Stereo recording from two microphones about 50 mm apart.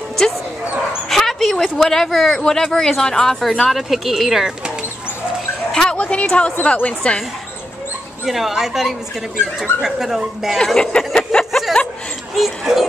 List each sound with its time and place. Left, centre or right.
1.0 s speech: centre
5.7 s dog: centre
5.9 s a woman's voice: left
8.3 s speech: centre
10.6 s speech: centre
11.1 s a sound: centre
12.4 s speech: centre